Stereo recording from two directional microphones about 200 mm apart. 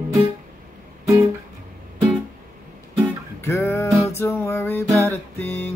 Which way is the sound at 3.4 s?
10° left (ahead or behind).